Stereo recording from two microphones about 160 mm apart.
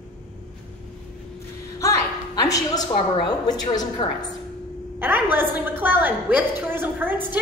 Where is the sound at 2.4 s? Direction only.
20° left (ahead or behind).